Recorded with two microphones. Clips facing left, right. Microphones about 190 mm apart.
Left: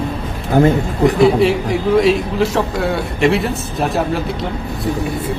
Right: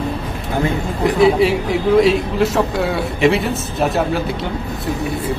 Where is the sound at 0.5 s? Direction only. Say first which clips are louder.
Left 8 dB; 40° left (ahead or behind).